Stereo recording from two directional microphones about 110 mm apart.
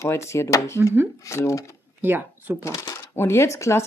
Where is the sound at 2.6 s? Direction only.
30° left (ahead or behind).